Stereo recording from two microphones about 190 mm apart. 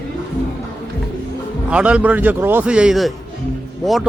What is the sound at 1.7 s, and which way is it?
A man's voice, 5° right (ahead or behind).